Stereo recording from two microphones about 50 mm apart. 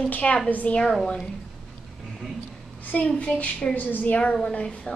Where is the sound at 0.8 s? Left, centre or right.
Centre.